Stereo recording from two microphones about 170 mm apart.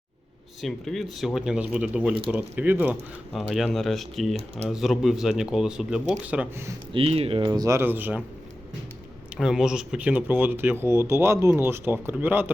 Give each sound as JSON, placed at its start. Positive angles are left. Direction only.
{"t": 0.6, "sound": "speech", "side_deg": 0}
{"t": 3.3, "sound": "speech", "side_deg": 0}
{"t": 6.9, "sound": "speech", "side_deg": -35}
{"t": 9.3, "sound": "speech", "side_deg": -5}